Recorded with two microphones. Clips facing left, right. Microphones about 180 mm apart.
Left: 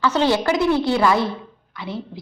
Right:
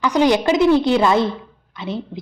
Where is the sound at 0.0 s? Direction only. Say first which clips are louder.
Right 3 dB; 15° right (ahead or behind).